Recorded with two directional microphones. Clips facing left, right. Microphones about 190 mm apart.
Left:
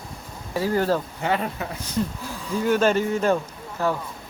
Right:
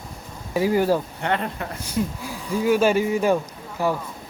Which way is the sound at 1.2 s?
5° left (ahead or behind).